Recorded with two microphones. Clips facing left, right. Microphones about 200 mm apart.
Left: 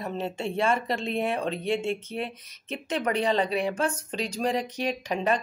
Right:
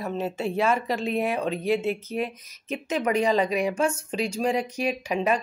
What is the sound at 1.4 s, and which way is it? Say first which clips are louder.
Speech: right 3 dB; 30° left (ahead or behind).